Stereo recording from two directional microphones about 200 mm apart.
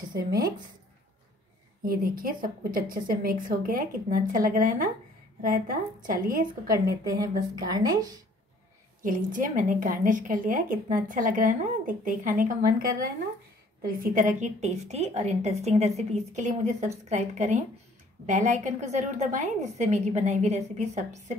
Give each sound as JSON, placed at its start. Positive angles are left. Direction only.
{"t": 0.1, "sound": "speech", "side_deg": -50}
{"t": 1.9, "sound": "a woman's voice", "side_deg": -45}
{"t": 6.4, "sound": "a woman's voice", "side_deg": -15}
{"t": 9.0, "sound": "a woman's voice", "side_deg": -45}